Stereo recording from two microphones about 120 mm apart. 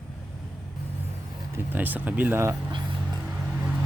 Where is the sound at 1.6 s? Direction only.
15° right (ahead or behind).